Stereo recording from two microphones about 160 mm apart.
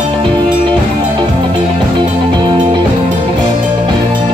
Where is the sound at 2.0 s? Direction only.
30° right (ahead or behind).